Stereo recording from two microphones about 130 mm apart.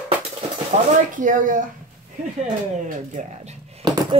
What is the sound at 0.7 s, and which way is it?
Speech, 90° right.